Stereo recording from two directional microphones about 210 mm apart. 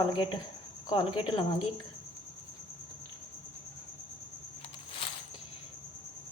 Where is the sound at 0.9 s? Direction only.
20° left (ahead or behind).